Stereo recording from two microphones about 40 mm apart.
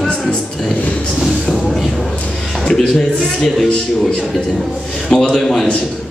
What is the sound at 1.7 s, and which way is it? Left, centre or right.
Speech, centre.